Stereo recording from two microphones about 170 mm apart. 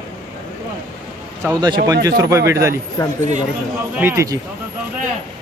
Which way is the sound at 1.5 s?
25° right (ahead or behind).